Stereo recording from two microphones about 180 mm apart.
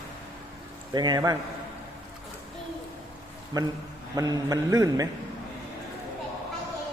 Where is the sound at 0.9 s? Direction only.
20° right (ahead or behind).